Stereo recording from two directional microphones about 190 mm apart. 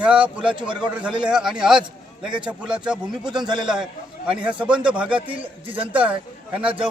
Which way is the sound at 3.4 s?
25° right (ahead or behind).